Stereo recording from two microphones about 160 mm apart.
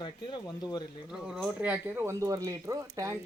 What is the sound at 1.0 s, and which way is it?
Speech, 5° right (ahead or behind).